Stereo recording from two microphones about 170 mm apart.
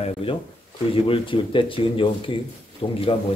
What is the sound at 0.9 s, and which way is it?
Speech, 30° left (ahead or behind).